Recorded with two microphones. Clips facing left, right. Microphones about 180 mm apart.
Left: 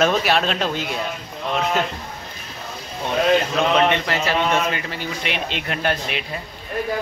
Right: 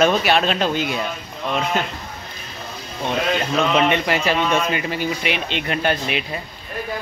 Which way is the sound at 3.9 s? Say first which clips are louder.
Right 2 dB; 15° right (ahead or behind).